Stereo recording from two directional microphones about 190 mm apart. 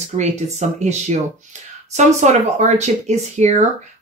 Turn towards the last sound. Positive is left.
turn(degrees=-35)  # may be behind; listen again after turning